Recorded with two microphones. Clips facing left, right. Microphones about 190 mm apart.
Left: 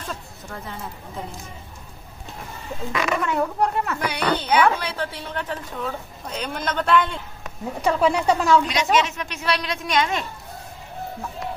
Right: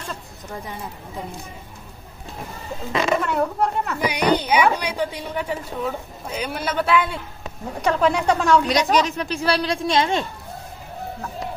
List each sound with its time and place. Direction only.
2.9 s a child's voice: 25° right (ahead or behind)
3.3 s speech: centre (ahead or behind)
4.0 s a woman's voice: 15° right (ahead or behind)
7.8 s speech: 5° left (ahead or behind)
8.9 s a woman's voice: 35° right (ahead or behind)